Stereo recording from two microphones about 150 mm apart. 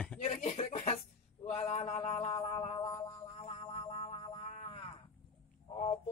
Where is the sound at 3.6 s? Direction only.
40° left (ahead or behind).